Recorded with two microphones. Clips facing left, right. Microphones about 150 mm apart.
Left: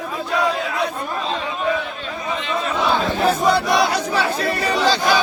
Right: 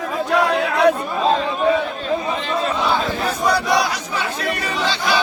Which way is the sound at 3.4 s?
25° left (ahead or behind).